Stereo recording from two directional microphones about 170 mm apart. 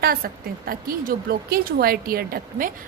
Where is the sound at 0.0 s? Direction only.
60° right (ahead or behind).